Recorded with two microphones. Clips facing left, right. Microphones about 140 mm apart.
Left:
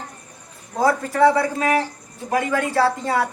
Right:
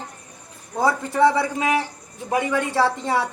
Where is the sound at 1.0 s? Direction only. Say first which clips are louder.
Left 1 dB; 20° right (ahead or behind).